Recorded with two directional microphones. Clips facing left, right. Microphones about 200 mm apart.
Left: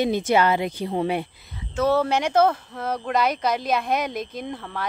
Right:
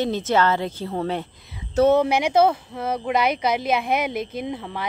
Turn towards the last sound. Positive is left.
turn(degrees=-10)  # may be behind; listen again after turning